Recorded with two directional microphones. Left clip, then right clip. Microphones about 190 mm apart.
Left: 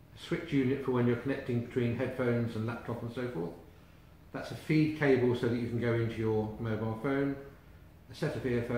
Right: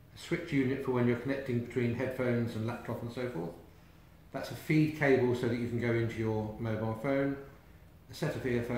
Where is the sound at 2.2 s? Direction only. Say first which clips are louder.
Left 2 dB; 30° right (ahead or behind).